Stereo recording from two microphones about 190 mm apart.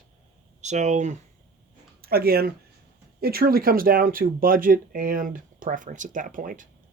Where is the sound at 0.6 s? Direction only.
35° right (ahead or behind).